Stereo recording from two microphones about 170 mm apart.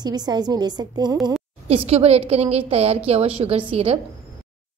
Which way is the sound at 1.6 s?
35° right (ahead or behind).